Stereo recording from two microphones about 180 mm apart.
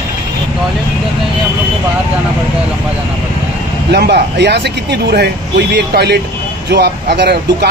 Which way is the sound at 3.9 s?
65° right (ahead or behind).